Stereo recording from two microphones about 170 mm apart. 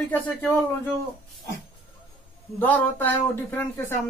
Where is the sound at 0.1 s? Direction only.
10° left (ahead or behind).